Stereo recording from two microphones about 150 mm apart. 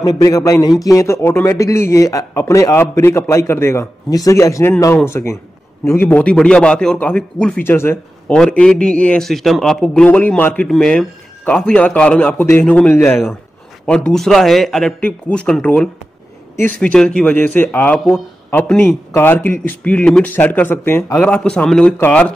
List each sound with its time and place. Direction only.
0.0 s a man's voice: 25° left (ahead or behind)